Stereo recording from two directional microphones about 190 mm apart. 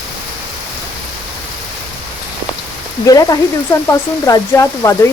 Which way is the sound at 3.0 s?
20° left (ahead or behind).